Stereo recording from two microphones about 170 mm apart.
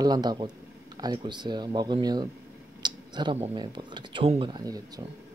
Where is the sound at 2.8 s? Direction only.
25° right (ahead or behind).